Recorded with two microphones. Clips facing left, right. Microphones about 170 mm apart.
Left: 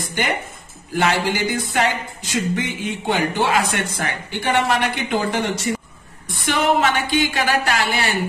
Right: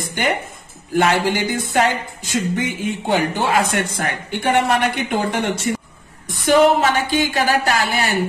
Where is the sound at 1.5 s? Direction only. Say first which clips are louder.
Right 2 dB; 50° right (ahead or behind).